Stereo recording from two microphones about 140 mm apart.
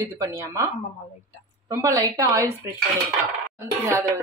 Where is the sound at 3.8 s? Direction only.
20° right (ahead or behind).